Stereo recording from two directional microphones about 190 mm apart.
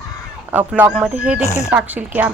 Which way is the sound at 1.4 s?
15° left (ahead or behind).